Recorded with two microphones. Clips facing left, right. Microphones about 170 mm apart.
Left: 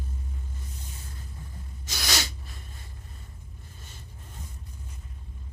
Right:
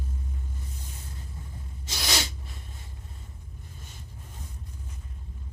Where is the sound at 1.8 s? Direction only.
25° right (ahead or behind).